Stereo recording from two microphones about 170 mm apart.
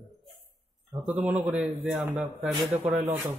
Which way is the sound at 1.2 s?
5° right (ahead or behind).